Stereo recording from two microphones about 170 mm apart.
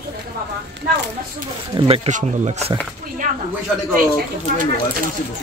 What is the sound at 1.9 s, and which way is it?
Speech, 45° right (ahead or behind).